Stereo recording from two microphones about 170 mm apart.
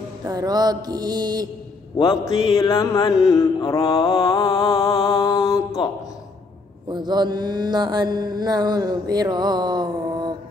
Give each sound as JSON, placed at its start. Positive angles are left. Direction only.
{"t": 0.2, "sound": "mantra", "side_deg": -20}
{"t": 2.0, "sound": "mantra", "side_deg": 25}
{"t": 6.9, "sound": "mantra", "side_deg": -25}